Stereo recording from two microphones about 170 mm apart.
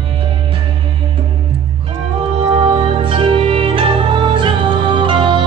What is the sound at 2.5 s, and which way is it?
Music, 35° right (ahead or behind).